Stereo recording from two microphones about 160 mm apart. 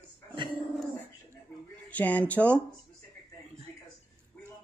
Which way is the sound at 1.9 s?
10° left (ahead or behind).